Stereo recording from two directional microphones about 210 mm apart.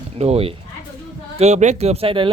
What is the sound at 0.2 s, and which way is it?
Speech, 30° right (ahead or behind).